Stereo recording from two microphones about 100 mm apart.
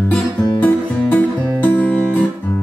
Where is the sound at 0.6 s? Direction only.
15° left (ahead or behind).